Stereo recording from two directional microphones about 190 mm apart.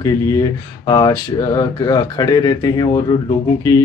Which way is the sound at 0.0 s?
20° left (ahead or behind).